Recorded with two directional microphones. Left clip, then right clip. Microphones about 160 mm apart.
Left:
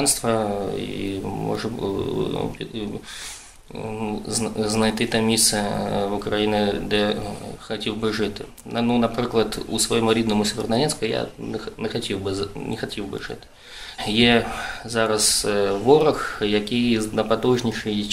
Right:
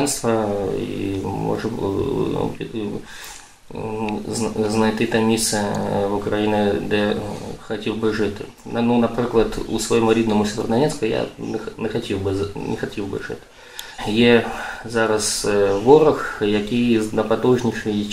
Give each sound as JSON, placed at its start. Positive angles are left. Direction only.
{"t": 0.0, "sound": "speech", "side_deg": 25}
{"t": 4.4, "sound": "speech", "side_deg": 25}
{"t": 14.0, "sound": "speech", "side_deg": 25}